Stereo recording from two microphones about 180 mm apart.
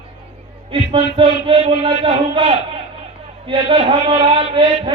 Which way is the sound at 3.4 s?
30° right (ahead or behind).